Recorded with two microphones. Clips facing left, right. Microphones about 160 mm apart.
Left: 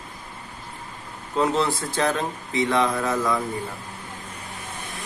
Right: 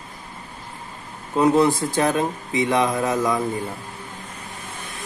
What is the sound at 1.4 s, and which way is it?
A man's voice, 15° right (ahead or behind).